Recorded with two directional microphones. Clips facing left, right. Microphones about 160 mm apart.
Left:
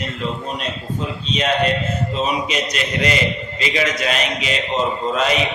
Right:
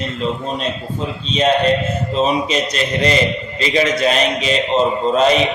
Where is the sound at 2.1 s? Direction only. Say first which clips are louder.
Right 6 dB; 30° right (ahead or behind).